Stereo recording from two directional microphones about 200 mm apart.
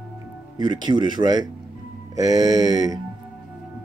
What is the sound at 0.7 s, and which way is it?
Speech, 20° right (ahead or behind).